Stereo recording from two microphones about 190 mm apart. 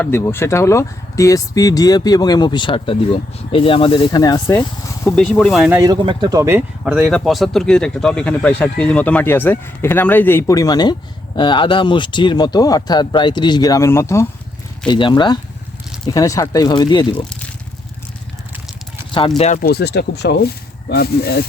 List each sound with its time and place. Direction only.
0.0 s speech: 10° left (ahead or behind)
5.0 s speech: 5° left (ahead or behind)
5.8 s speech: 20° right (ahead or behind); by 14.3 s 15° left (ahead or behind)
14.8 s speech: 25° left (ahead or behind)
19.6 s speech: 55° left (ahead or behind)